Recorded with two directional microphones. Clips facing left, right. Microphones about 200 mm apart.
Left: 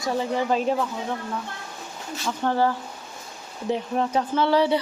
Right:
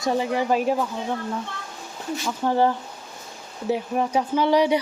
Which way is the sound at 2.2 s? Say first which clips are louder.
Right 1 dB; 10° right (ahead or behind).